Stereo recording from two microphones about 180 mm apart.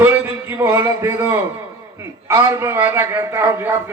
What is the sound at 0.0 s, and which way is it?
A man's voice, 10° right (ahead or behind).